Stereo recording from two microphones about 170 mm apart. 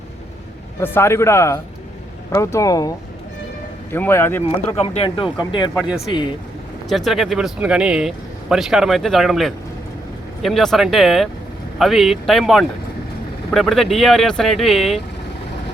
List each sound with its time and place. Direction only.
0.8 s a man's voice: 15° left (ahead or behind)
3.9 s a man's voice: 15° left (ahead or behind)
4.8 s speech: 30° left (ahead or behind)
6.8 s speech: centre (ahead or behind)